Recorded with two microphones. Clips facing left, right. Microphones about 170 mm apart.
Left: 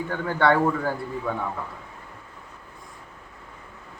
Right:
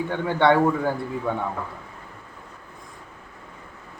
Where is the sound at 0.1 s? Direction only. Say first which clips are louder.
Right 2 dB; 25° right (ahead or behind).